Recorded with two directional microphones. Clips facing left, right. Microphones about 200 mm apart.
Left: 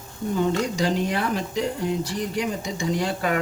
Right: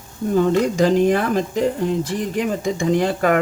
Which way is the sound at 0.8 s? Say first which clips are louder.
Right 8 dB; 50° right (ahead or behind).